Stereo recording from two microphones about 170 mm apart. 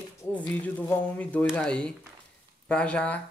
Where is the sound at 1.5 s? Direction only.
5° left (ahead or behind).